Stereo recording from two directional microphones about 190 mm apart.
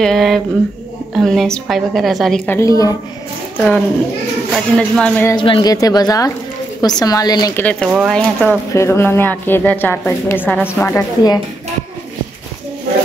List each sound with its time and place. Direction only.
0.0 s a woman's voice: centre (ahead or behind); by 3.0 s 15° left (ahead or behind)
3.5 s a woman's voice: 5° left (ahead or behind)
5.3 s a woman's voice: 25° left (ahead or behind)
7.5 s speech: 5° left (ahead or behind)